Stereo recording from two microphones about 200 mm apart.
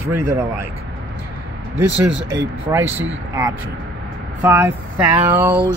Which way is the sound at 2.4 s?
10° right (ahead or behind).